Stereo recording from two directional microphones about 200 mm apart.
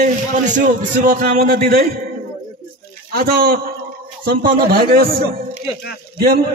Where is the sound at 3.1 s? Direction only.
50° right (ahead or behind).